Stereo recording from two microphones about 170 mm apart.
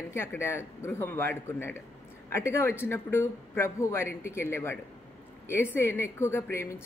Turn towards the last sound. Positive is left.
turn(degrees=15)  # may be behind; listen again after turning